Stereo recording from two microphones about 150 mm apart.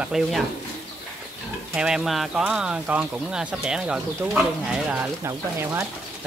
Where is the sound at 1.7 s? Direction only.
5° right (ahead or behind).